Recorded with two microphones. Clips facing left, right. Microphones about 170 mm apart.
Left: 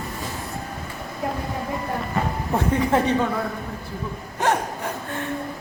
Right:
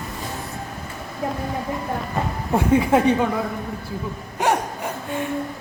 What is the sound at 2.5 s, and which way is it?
Speech, 10° right (ahead or behind).